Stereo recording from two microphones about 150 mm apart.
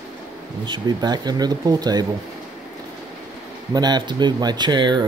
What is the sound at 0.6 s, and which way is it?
Speech, 30° right (ahead or behind).